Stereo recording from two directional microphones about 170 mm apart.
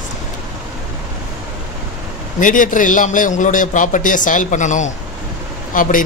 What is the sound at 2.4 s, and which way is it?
A man's voice, 50° left (ahead or behind).